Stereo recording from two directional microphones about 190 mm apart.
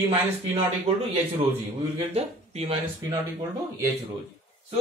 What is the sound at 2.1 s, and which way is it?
Speech, 35° right (ahead or behind).